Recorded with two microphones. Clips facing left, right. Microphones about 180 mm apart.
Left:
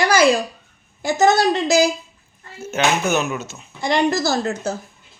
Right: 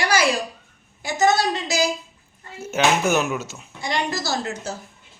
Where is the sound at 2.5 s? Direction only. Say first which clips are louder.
Even; 10° right (ahead or behind).